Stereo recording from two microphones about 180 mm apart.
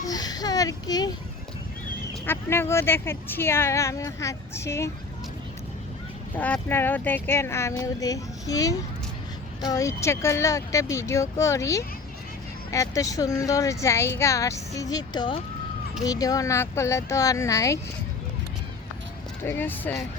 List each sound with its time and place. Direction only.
0.0 s a sound: 20° left (ahead or behind)
2.2 s speech: 15° left (ahead or behind)
6.3 s speech: 10° left (ahead or behind)
19.5 s speech: 10° left (ahead or behind)